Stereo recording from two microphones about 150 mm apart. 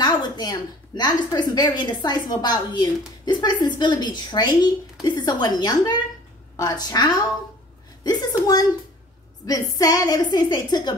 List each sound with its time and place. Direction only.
0.0 s a woman's voice: 25° left (ahead or behind)